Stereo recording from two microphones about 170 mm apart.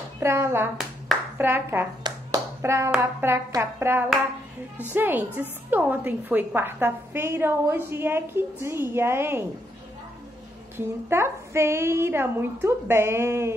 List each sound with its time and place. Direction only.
0.2 s a woman's voice: 15° right (ahead or behind)
2.0 s hands: 20° right (ahead or behind)
2.9 s a woman's voice: 10° right (ahead or behind)
11.1 s a woman's voice: 15° right (ahead or behind)